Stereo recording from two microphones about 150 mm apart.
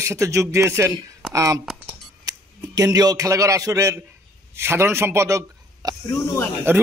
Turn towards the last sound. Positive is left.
turn(degrees=-15)  # may be behind; listen again after turning